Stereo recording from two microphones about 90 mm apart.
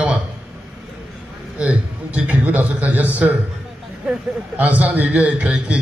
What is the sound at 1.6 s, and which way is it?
A man's voice, 15° right (ahead or behind).